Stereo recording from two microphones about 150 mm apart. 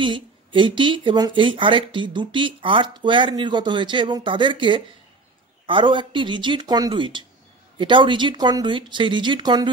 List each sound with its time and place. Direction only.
0.0 s speech: 35° right (ahead or behind)